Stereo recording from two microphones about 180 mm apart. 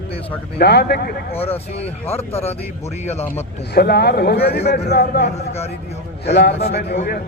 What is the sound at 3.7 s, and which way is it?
A man's voice, 60° left (ahead or behind).